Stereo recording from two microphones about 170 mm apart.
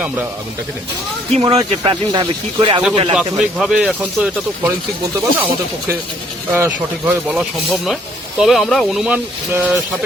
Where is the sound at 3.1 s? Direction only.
Centre (ahead or behind).